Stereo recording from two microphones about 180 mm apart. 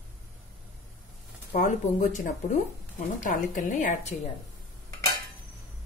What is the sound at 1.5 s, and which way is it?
A woman's voice, 45° left (ahead or behind).